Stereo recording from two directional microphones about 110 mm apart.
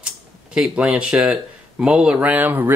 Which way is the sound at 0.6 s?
10° right (ahead or behind).